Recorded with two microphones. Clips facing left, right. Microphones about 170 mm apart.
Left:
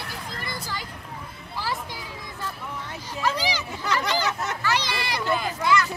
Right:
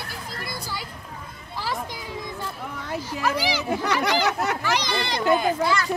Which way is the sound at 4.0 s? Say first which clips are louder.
Right 4 dB; 65° right (ahead or behind).